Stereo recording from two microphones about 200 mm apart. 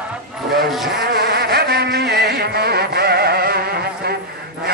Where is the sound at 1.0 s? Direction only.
50° right (ahead or behind).